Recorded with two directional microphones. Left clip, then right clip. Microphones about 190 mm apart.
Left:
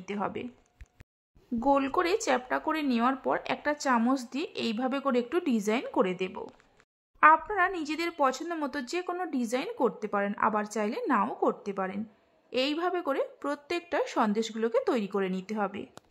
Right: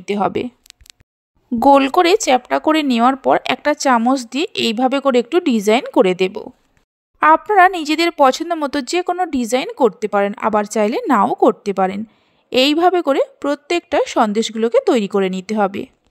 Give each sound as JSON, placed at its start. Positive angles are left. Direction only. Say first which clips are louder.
{"t": 0.0, "sound": "speech", "louder": "right 15 dB", "side_deg": -40}
{"t": 1.6, "sound": "speech", "louder": "right 15 dB", "side_deg": -45}